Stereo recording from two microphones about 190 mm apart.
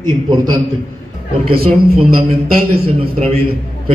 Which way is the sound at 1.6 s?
30° right (ahead or behind).